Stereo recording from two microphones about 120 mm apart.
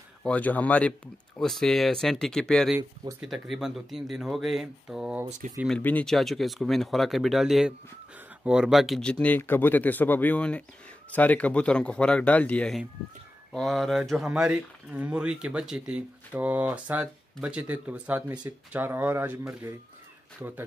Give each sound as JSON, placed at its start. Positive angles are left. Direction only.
{"t": 0.2, "sound": "speech", "side_deg": 10}
{"t": 2.8, "sound": "speech", "side_deg": -35}
{"t": 3.2, "sound": "speech", "side_deg": 0}
{"t": 5.7, "sound": "speech", "side_deg": 15}
{"t": 6.0, "sound": "speech", "side_deg": 0}
{"t": 9.2, "sound": "speech", "side_deg": 15}